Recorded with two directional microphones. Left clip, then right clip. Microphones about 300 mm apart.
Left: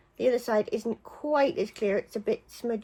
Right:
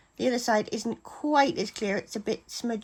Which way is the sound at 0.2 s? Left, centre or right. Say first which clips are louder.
Even; right.